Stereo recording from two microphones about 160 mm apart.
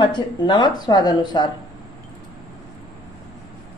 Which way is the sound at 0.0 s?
30° left (ahead or behind).